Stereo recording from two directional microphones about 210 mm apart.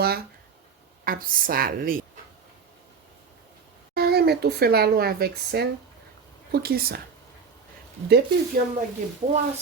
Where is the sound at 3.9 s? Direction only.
50° right (ahead or behind).